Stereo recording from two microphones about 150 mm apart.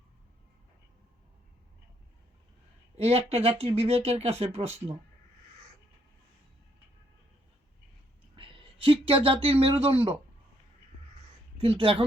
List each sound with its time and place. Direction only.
3.0 s speech: 40° right (ahead or behind)
8.4 s speech: 35° right (ahead or behind)
11.5 s speech: 40° right (ahead or behind)